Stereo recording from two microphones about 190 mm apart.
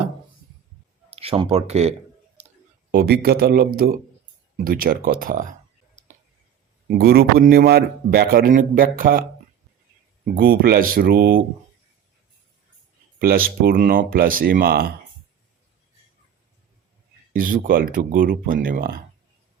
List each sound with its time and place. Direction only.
1.1 s speech: 30° right (ahead or behind)
2.9 s a man's voice: 55° right (ahead or behind)
6.8 s a man's voice: 55° right (ahead or behind)
10.3 s a man's voice: 50° right (ahead or behind)
13.1 s a man's voice: 50° right (ahead or behind)
17.3 s a man's voice: 45° right (ahead or behind)